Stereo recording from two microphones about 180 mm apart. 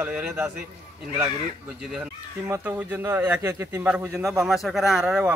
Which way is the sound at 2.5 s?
5° right (ahead or behind).